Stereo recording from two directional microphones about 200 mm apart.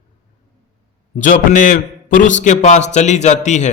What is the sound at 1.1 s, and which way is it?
A man's voice, 40° left (ahead or behind).